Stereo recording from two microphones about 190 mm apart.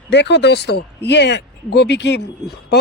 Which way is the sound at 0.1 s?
65° left (ahead or behind).